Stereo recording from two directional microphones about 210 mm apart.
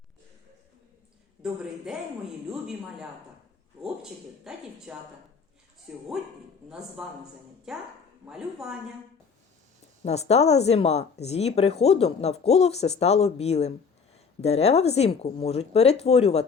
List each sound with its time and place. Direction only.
1.4 s a woman's voice: centre (ahead or behind)
4.5 s a woman's voice: 5° right (ahead or behind)
7.0 s a woman's voice: centre (ahead or behind)
10.0 s speech: 30° left (ahead or behind)